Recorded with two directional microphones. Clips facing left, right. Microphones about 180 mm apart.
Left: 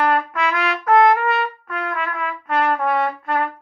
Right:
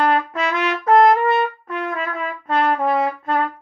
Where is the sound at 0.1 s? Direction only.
30° right (ahead or behind).